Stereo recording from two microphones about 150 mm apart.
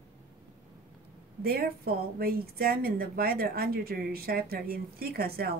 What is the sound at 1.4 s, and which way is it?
Speech, 90° right.